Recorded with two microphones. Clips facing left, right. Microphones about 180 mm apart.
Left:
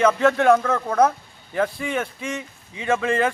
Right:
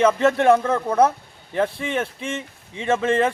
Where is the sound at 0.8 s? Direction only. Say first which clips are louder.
Right 1 dB; 10° right (ahead or behind).